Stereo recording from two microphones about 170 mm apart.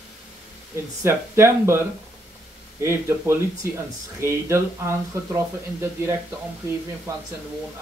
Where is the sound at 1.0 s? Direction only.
15° right (ahead or behind).